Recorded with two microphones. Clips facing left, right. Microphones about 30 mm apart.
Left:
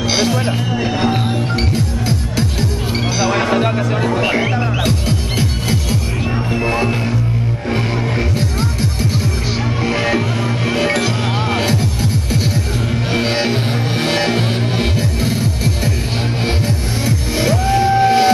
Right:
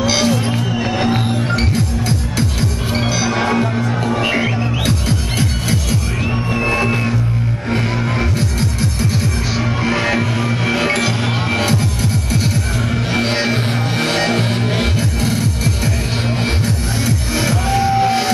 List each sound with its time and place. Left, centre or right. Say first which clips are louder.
0.0 s music: right 1 dB; centre
3.5 s music: left 2 dB; left
4.1 s music: even; centre
6.5 s music: right 1 dB; centre
9.8 s music: left 1 dB; centre